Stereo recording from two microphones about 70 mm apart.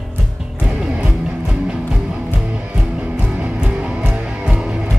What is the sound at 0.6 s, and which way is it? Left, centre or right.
Music, centre.